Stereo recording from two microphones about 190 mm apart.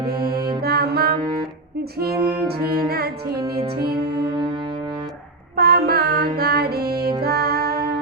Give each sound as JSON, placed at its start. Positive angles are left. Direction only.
{"t": 0.1, "sound": "music", "side_deg": -55}
{"t": 5.5, "sound": "music", "side_deg": -55}